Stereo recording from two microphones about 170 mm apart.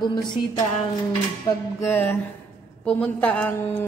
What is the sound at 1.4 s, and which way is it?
Speech, 15° left (ahead or behind).